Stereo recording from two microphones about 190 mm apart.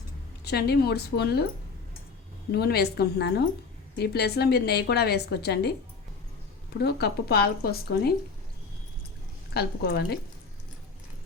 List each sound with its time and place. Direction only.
0.4 s a woman's voice: 55° left (ahead or behind)
2.5 s a woman's voice: 55° left (ahead or behind)
6.7 s a woman's voice: 55° left (ahead or behind)
9.6 s a woman's voice: 60° left (ahead or behind)